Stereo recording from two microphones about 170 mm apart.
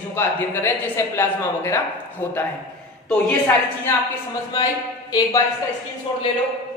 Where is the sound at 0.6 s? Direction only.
15° left (ahead or behind).